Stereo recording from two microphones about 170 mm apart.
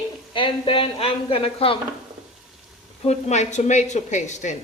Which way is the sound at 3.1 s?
40° left (ahead or behind).